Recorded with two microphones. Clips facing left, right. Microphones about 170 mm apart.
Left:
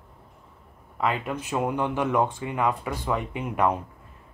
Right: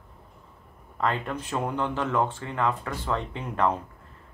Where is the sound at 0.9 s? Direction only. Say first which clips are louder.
Left 1 dB; 10° left (ahead or behind).